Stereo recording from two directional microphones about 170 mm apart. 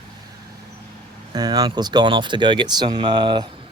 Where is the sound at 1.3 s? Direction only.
25° right (ahead or behind).